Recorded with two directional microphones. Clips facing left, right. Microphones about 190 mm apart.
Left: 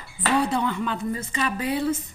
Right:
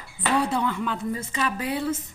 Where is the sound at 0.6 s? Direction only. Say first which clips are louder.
Left 1 dB; 5° right (ahead or behind).